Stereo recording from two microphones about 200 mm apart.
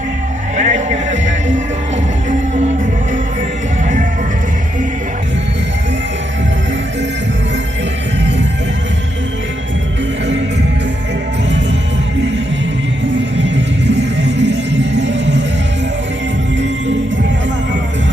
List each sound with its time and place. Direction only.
0.5 s music: 35° right (ahead or behind)
13.1 s music: 60° right (ahead or behind)